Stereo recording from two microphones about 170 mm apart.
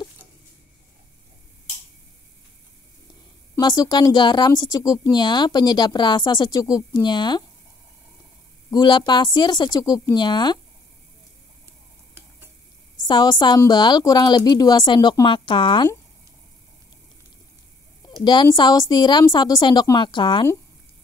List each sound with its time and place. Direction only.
3.5 s speech: 20° left (ahead or behind)
8.6 s speech: 25° left (ahead or behind)
13.0 s speech: 25° left (ahead or behind)
18.2 s speech: 25° left (ahead or behind)